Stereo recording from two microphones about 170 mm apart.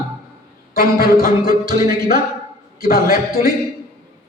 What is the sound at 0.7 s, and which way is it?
Speech, 60° left (ahead or behind).